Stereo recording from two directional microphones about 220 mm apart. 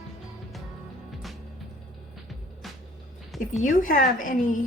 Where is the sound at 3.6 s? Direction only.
35° left (ahead or behind).